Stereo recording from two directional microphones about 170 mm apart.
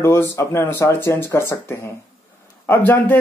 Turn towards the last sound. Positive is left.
turn(degrees=10)  # may be behind; listen again after turning